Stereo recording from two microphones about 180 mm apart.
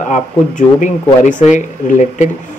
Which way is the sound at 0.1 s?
45° left (ahead or behind).